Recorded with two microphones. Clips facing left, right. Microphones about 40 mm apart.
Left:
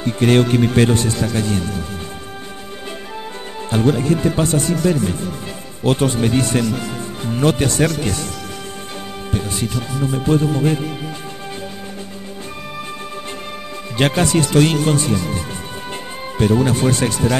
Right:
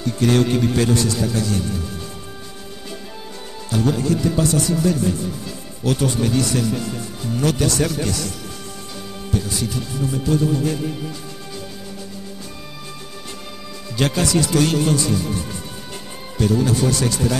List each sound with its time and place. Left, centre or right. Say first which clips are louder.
0.0 s speech: left 3 dB; left
3.7 s speech: left 3 dB; left
9.3 s speech: left 1 dB; left
13.9 s speech: left 3 dB; left